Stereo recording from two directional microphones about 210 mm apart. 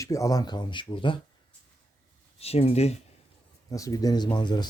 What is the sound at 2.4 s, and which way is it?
Speech, 30° left (ahead or behind).